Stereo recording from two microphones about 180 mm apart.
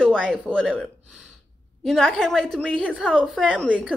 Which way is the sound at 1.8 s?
Centre (ahead or behind).